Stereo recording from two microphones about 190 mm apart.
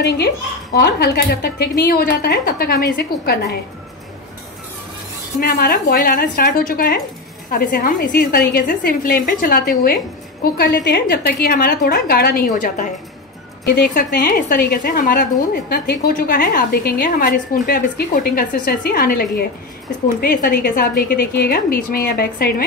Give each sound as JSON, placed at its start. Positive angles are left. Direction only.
{"t": 0.7, "sound": "speech", "side_deg": 55}
{"t": 5.4, "sound": "a woman's voice", "side_deg": 50}